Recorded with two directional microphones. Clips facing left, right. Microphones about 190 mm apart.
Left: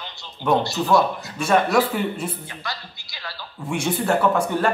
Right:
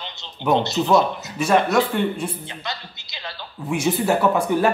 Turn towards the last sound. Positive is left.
turn(degrees=-10)  # may be behind; listen again after turning